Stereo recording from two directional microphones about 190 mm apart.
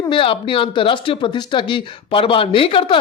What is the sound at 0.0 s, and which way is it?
Speech, 25° left (ahead or behind).